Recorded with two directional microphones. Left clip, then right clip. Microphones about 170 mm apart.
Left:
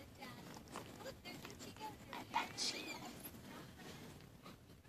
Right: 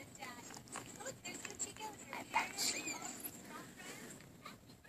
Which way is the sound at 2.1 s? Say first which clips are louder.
Right 4 dB; centre (ahead or behind).